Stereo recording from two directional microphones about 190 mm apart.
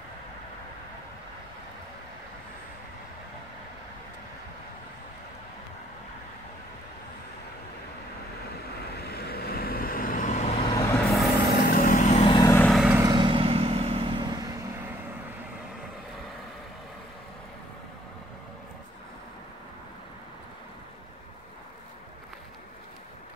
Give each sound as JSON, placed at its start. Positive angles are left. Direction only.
{"t": 8.9, "sound": "vehicle", "side_deg": 55}
{"t": 10.7, "sound": "vehicle", "side_deg": 20}
{"t": 11.6, "sound": "vehicle", "side_deg": 50}
{"t": 12.4, "sound": "vehicle", "side_deg": 15}
{"t": 12.6, "sound": "vehicle", "side_deg": -5}
{"t": 13.0, "sound": "vehicle", "side_deg": -25}